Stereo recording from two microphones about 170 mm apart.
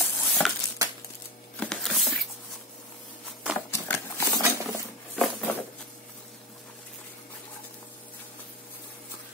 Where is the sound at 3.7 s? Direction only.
15° left (ahead or behind).